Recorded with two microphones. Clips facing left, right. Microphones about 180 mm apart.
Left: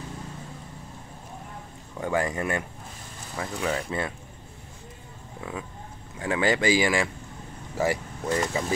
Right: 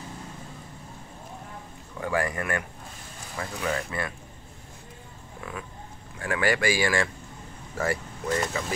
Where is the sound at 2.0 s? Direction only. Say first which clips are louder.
Left 1 dB; 20° left (ahead or behind).